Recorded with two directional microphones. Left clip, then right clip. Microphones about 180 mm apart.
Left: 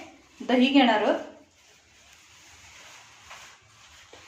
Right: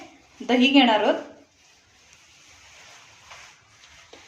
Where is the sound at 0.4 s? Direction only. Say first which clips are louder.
Right 3 dB; 15° right (ahead or behind).